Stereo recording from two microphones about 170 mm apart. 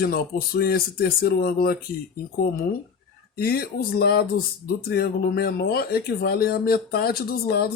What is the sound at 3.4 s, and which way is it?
Speech, 65° left (ahead or behind).